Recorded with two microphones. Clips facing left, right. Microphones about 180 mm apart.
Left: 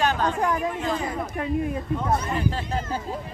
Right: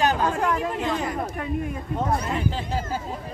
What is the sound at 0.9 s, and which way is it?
Speech, 70° right (ahead or behind).